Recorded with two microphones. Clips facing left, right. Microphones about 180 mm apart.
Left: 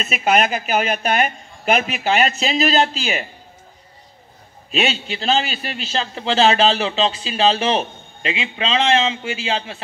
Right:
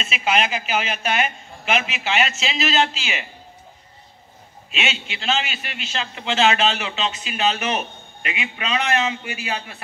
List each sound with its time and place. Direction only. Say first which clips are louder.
0.0 s a man's voice: left 4 dB; 45° left (ahead or behind)
4.6 s a man's voice: left 7 dB; 35° left (ahead or behind)